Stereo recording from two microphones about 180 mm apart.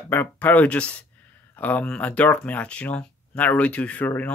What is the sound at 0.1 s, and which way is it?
Speech, 10° left (ahead or behind).